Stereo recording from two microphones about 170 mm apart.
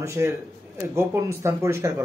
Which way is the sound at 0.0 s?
15° right (ahead or behind).